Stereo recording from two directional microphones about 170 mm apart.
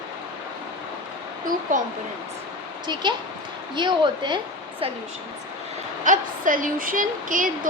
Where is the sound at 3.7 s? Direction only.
25° right (ahead or behind).